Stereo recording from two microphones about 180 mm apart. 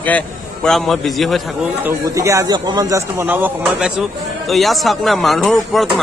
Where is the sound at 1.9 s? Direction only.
15° right (ahead or behind).